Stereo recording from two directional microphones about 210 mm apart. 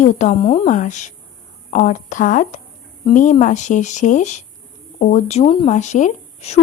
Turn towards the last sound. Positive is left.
turn(degrees=35)  # may be behind; listen again after turning